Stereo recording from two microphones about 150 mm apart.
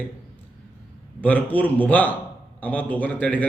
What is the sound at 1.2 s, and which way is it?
Speech, 10° left (ahead or behind).